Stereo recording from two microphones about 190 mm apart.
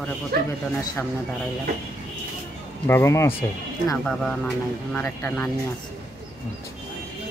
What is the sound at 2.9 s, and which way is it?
Speech, 15° left (ahead or behind).